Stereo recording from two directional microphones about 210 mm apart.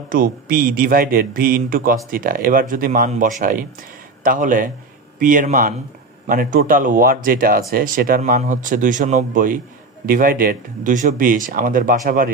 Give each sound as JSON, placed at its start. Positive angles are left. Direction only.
{"t": 0.1, "sound": "a man's voice", "side_deg": -40}